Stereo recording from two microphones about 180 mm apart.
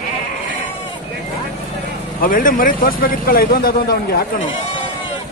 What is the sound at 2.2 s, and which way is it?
Speech, 50° left (ahead or behind).